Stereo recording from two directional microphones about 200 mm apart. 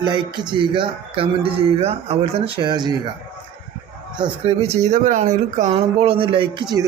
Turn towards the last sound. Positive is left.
turn(degrees=-25)  # may be behind; listen again after turning